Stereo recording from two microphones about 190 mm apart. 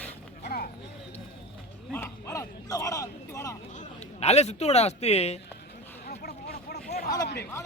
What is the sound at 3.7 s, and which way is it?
A man's voice, 40° left (ahead or behind).